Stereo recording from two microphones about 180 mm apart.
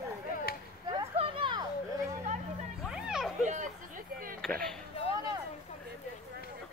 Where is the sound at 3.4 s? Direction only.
40° right (ahead or behind).